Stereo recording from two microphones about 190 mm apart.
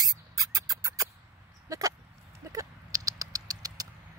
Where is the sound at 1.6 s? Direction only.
20° right (ahead or behind).